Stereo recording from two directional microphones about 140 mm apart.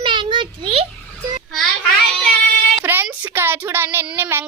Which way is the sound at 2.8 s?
15° right (ahead or behind).